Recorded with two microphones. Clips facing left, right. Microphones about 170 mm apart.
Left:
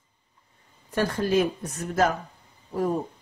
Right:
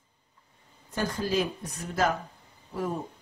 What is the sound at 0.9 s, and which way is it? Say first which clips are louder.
Speech: left 5 dB; 45° left (ahead or behind).